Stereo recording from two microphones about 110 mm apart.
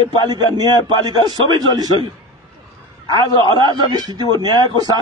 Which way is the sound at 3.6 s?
40° right (ahead or behind).